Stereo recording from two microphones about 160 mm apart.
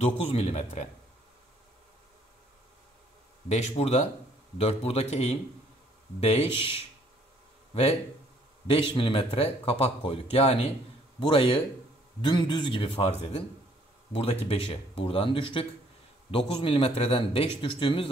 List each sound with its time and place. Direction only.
0.0 s a man's voice: 40° left (ahead or behind)
3.4 s a man's voice: 45° left (ahead or behind)